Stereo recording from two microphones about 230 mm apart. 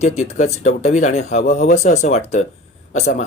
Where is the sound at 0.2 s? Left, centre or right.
Left.